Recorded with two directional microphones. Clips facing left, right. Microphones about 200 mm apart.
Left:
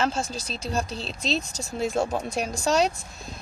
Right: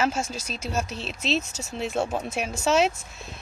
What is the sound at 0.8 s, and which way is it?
Speech, 35° left (ahead or behind).